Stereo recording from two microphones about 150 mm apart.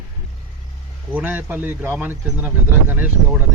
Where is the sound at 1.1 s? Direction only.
10° right (ahead or behind).